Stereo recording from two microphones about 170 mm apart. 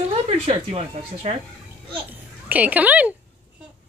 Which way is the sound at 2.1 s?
10° right (ahead or behind).